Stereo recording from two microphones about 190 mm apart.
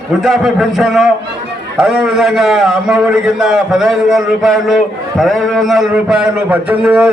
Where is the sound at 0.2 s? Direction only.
Centre (ahead or behind).